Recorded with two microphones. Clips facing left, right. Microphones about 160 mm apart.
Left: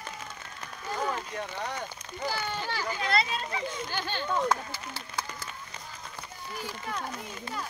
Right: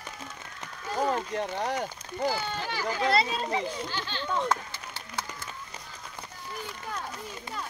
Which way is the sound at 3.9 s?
50° left (ahead or behind).